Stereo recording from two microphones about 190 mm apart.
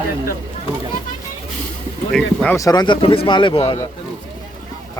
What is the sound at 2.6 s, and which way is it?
Speech, 20° left (ahead or behind).